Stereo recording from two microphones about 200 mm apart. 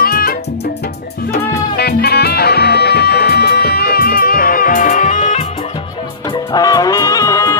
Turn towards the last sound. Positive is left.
turn(degrees=15)  # may be behind; listen again after turning